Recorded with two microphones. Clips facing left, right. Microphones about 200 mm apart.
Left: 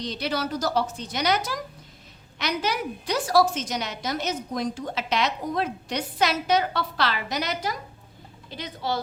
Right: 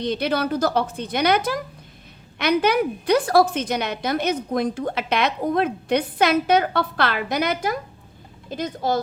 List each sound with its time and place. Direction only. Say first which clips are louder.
0.0 s a woman's voice: right 6 dB; 55° right (ahead or behind)